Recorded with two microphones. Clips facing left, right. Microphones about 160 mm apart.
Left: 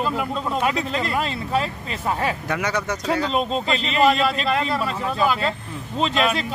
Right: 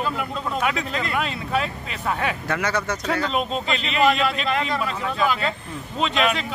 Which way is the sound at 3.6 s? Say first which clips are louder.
Left 1 dB; 35° left (ahead or behind).